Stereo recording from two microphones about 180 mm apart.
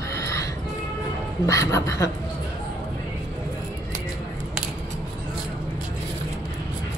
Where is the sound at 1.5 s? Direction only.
15° left (ahead or behind).